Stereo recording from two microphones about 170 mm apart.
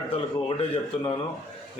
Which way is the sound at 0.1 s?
35° left (ahead or behind).